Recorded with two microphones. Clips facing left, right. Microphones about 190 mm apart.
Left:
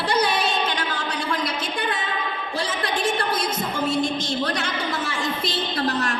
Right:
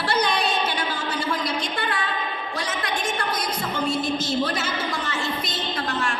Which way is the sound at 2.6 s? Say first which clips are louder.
Left 3 dB; 30° left (ahead or behind).